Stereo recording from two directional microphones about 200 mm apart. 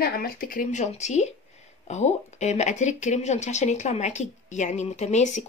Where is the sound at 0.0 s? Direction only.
50° left (ahead or behind).